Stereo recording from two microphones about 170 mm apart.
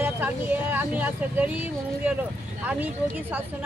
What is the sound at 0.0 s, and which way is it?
Speech, 10° right (ahead or behind).